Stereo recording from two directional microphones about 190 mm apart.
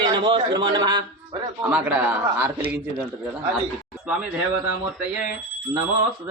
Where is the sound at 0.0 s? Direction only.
25° right (ahead or behind).